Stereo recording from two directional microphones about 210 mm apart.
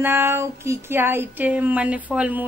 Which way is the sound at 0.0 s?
10° right (ahead or behind).